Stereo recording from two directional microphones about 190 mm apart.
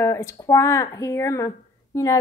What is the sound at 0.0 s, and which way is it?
Speech, 15° left (ahead or behind).